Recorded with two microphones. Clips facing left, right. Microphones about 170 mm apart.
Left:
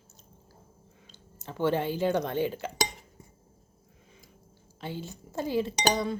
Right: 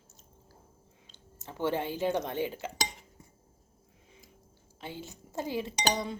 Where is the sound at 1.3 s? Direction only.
20° right (ahead or behind).